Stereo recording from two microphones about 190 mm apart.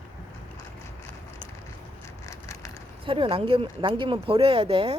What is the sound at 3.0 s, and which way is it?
Speech, 30° right (ahead or behind).